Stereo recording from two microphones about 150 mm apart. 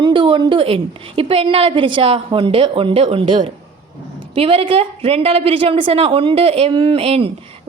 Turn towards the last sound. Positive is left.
turn(degrees=-40)  # may be behind; listen again after turning